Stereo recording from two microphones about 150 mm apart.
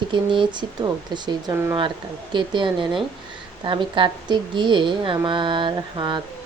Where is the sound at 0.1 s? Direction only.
30° right (ahead or behind).